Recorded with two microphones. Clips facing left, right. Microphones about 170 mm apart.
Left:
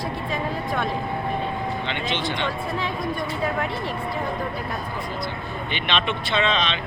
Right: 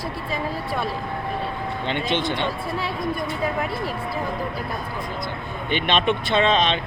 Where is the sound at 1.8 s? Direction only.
50° right (ahead or behind).